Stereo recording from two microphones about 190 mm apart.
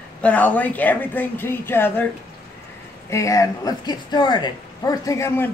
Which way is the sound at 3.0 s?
15° left (ahead or behind).